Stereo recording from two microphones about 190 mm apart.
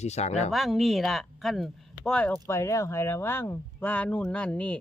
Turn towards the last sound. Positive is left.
turn(degrees=5)  # may be behind; listen again after turning